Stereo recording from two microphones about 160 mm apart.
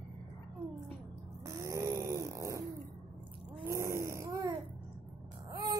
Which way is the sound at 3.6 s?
20° right (ahead or behind).